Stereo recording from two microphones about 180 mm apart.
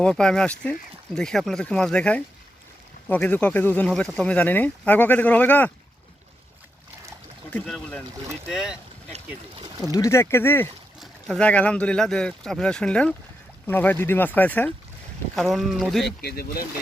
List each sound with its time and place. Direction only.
0.0 s speech: 5° left (ahead or behind)
7.5 s speech: 5° left (ahead or behind)
8.4 s speech: 5° right (ahead or behind)
9.8 s speech: 20° left (ahead or behind); by 16.0 s centre (ahead or behind)
16.0 s speech: 60° left (ahead or behind)